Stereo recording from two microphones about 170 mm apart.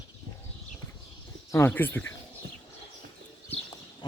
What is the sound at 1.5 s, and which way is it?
Speech, 15° left (ahead or behind).